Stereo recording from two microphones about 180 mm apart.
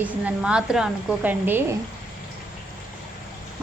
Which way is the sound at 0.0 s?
5° right (ahead or behind).